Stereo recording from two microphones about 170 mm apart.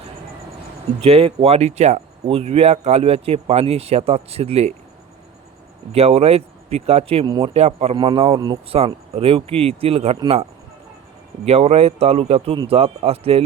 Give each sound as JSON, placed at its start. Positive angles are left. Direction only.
{"t": 1.0, "sound": "speech", "side_deg": -35}
{"t": 5.9, "sound": "speech", "side_deg": -35}